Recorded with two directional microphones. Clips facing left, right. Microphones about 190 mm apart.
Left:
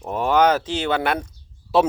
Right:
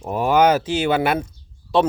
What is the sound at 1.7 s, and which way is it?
Speech, 5° left (ahead or behind).